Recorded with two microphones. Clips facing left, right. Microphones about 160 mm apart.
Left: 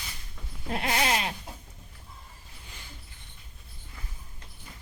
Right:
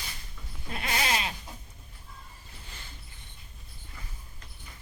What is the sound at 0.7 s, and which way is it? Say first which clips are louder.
Bleat: left 3 dB; 60° left (ahead or behind).